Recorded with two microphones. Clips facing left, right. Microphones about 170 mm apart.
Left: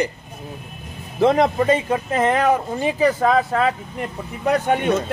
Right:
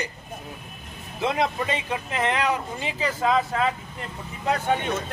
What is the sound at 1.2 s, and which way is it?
Speech, 50° left (ahead or behind).